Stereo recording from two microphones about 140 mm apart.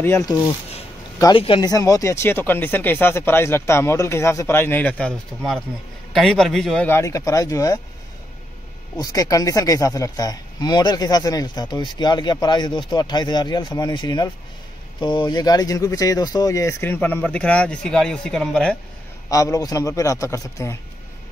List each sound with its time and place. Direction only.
0.0 s speech: 15° left (ahead or behind)
1.3 s speech: 35° left (ahead or behind)
1.7 s a man's voice: 25° left (ahead or behind); by 6.9 s 5° left (ahead or behind)
6.9 s speech: 20° left (ahead or behind)
8.9 s speech: 25° left (ahead or behind); by 18.8 s 5° left (ahead or behind)
19.3 s speech: 25° left (ahead or behind)